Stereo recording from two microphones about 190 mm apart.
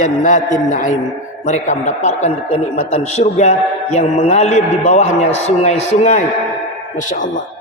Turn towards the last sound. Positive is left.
turn(degrees=45)  # may be behind; listen again after turning